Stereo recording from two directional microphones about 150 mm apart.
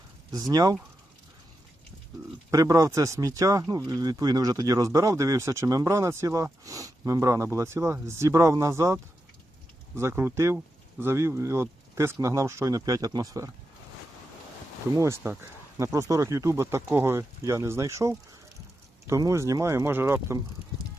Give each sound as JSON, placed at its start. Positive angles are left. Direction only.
{"t": 0.3, "sound": "speech", "side_deg": -25}
{"t": 2.5, "sound": "speech", "side_deg": -20}
{"t": 15.2, "sound": "speech", "side_deg": -20}